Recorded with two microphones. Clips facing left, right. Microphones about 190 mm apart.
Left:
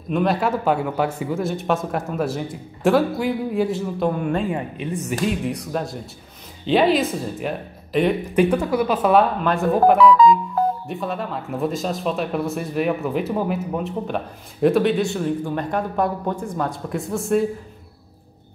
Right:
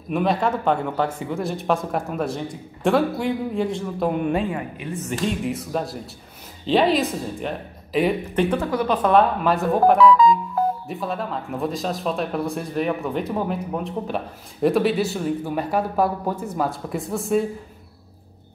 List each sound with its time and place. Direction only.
0.1 s speech: centre (ahead or behind)
4.1 s a woman's voice: 20° right (ahead or behind)
4.5 s a woman's voice: 25° left (ahead or behind)
5.2 s speech: centre (ahead or behind)
8.4 s speech: 10° left (ahead or behind)